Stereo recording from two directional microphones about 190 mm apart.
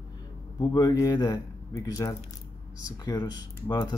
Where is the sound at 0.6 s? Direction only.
20° left (ahead or behind).